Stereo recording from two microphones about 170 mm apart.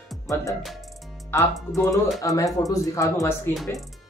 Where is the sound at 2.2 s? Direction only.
20° left (ahead or behind).